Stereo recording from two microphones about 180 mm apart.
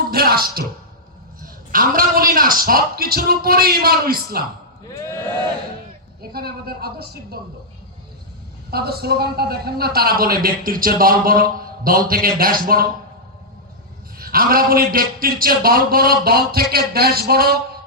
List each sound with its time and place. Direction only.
0.1 s a man's voice: 55° right (ahead or behind)
6.3 s a man's voice: 60° right (ahead or behind)
8.7 s a man's voice: 60° right (ahead or behind)
14.2 s a man's voice: 55° right (ahead or behind)